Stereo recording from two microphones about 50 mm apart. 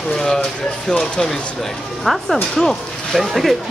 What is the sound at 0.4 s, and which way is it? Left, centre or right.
Speech, centre.